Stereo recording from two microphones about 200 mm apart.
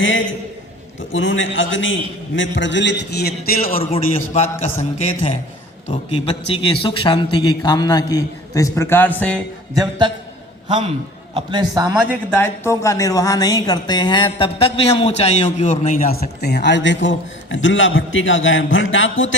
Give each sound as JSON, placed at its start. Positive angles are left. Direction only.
{"t": 0.0, "sound": "a man's voice", "side_deg": 70}
{"t": 4.8, "sound": "a man's voice", "side_deg": 35}
{"t": 9.7, "sound": "a man's voice", "side_deg": -20}
{"t": 12.3, "sound": "a woman's voice", "side_deg": 10}
{"t": 16.0, "sound": "a man's voice", "side_deg": 50}